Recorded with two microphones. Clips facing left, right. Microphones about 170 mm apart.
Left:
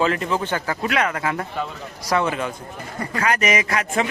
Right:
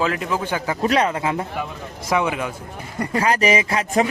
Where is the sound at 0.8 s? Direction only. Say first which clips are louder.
Right 6 dB; 35° right (ahead or behind); by 2.5 s 10° right (ahead or behind).